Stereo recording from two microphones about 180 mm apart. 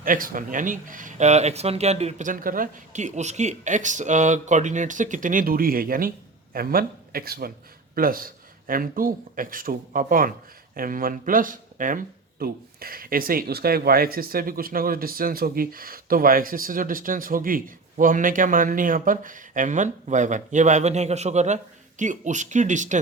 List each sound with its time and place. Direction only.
0.0 s speech: 50° right (ahead or behind)